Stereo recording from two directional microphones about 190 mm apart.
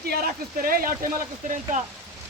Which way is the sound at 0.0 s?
55° right (ahead or behind).